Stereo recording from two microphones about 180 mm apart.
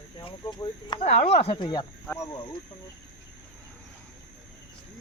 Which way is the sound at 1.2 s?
65° left (ahead or behind).